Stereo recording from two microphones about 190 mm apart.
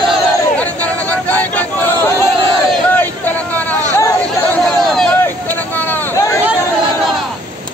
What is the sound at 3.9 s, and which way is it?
Chatter, 15° left (ahead or behind).